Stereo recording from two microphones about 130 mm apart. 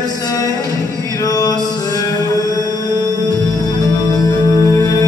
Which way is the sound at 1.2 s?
30° left (ahead or behind).